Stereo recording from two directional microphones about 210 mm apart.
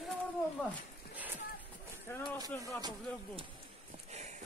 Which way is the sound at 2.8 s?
20° right (ahead or behind).